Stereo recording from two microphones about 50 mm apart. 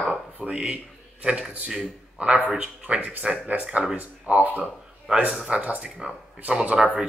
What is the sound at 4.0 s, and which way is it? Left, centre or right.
Speech, right.